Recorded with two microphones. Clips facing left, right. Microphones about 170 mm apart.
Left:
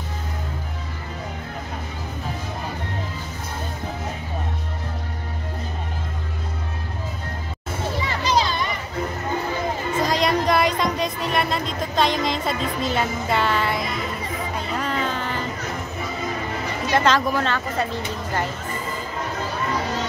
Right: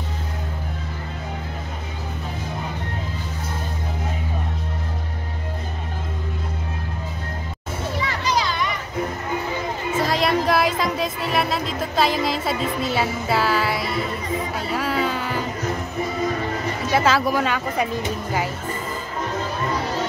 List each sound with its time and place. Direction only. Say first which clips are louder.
9.9 s music: right 1 dB; 5° right (ahead or behind)
16.9 s speech: even; 5° right (ahead or behind)